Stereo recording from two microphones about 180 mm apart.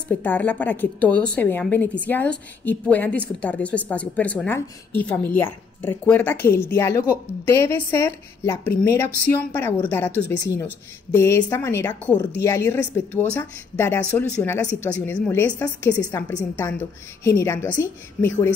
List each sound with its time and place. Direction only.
0.2 s a woman's voice: 10° left (ahead or behind)
15.9 s a woman's voice: 20° left (ahead or behind)